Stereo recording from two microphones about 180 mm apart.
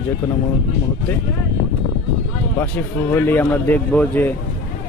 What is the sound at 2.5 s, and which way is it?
A man's voice, 10° left (ahead or behind).